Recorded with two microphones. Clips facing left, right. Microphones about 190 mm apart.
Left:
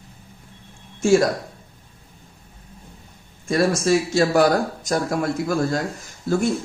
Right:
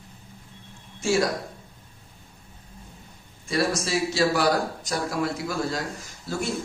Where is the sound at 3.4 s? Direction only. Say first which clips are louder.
Left 6 dB; 50° left (ahead or behind).